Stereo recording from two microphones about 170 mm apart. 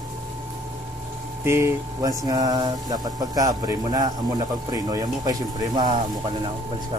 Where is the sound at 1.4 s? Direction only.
15° right (ahead or behind).